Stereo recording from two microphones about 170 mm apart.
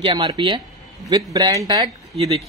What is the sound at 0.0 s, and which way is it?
A man's voice, 30° right (ahead or behind).